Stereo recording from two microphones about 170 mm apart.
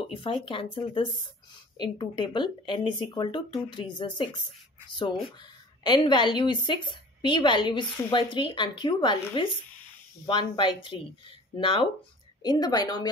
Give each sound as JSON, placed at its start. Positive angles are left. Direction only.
{"t": 0.1, "sound": "a woman's voice", "side_deg": 30}
{"t": 5.4, "sound": "a woman's voice", "side_deg": 25}